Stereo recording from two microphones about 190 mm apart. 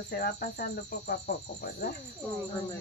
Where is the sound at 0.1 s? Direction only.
55° left (ahead or behind).